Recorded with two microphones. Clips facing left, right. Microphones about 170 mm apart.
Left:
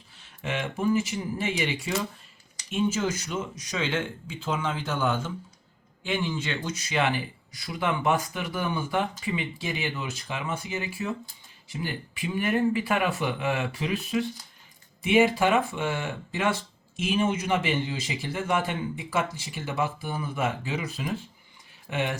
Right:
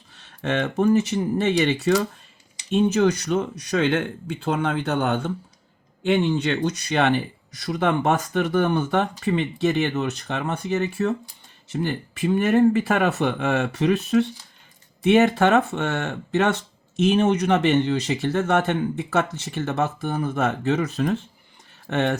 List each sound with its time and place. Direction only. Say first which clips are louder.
0.1 s speech: right 7 dB; 65° right (ahead or behind)
7.8 s speech: right 4 dB; 60° right (ahead or behind)